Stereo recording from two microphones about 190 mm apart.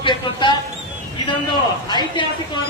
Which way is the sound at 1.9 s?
25° left (ahead or behind).